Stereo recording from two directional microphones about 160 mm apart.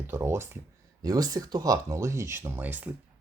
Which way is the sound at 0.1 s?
15° right (ahead or behind).